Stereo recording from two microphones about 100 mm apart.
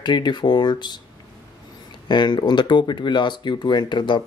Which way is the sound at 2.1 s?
50° left (ahead or behind).